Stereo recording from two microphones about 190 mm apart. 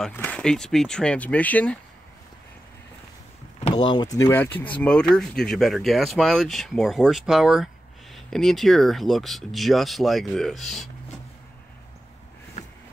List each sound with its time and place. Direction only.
0.0 s speech: 10° left (ahead or behind)
3.7 s speech: 25° left (ahead or behind); by 10.9 s centre (ahead or behind)
12.6 s a sound: 35° left (ahead or behind)